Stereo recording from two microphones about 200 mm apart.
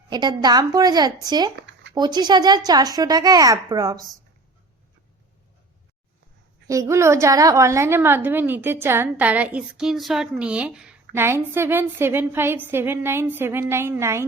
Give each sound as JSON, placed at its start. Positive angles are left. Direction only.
{"t": 0.1, "sound": "a woman's voice", "side_deg": -20}
{"t": 1.5, "sound": "a sound", "side_deg": -60}
{"t": 2.0, "sound": "a woman's voice", "side_deg": -20}
{"t": 6.7, "sound": "a woman's voice", "side_deg": -15}